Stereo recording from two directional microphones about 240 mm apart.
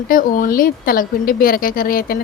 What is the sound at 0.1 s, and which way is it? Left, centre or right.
A woman's voice, left.